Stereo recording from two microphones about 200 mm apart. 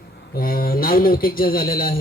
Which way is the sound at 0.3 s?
45° left (ahead or behind).